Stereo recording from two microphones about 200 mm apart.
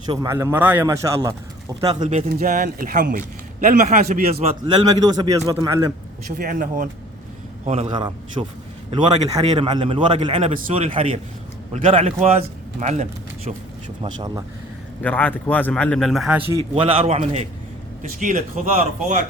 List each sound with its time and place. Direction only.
0.1 s a man's voice: 15° right (ahead or behind)
1.8 s a man's voice: 30° right (ahead or behind)
4.6 s a man's voice: 20° right (ahead or behind)
6.3 s a man's voice: 45° right (ahead or behind)
7.9 s a man's voice: 25° right (ahead or behind)
14.0 s a man's voice: 20° right (ahead or behind)
15.0 s speech: 10° left (ahead or behind)
16.6 s a man's voice: 30° right (ahead or behind)